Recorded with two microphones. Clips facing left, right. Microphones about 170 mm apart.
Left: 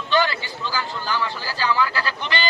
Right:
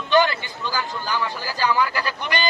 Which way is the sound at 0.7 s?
45° right (ahead or behind).